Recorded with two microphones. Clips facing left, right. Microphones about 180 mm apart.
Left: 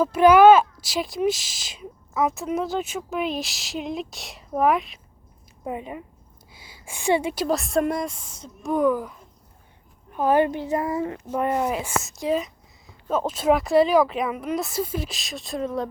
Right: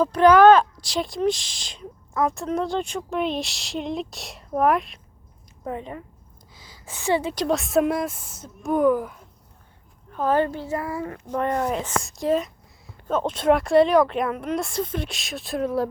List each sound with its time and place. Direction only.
0.0 s speech: 10° left (ahead or behind)
5.6 s speech: 10° left (ahead or behind)
6.5 s a sound: 10° left (ahead or behind)
7.3 s speech: centre (ahead or behind)
10.1 s speech: 15° left (ahead or behind)
11.3 s speech: 10° left (ahead or behind)